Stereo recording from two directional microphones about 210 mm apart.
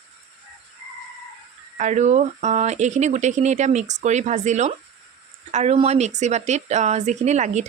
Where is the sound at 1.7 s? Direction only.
35° right (ahead or behind).